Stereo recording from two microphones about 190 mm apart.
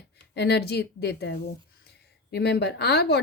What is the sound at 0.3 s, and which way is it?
A woman's voice, 60° left (ahead or behind).